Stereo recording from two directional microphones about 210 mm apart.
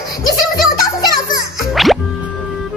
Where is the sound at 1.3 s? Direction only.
Centre (ahead or behind).